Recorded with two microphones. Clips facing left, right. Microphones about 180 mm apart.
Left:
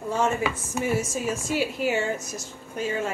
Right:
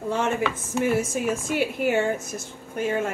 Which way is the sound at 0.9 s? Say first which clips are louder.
Right 3 dB; 55° right (ahead or behind).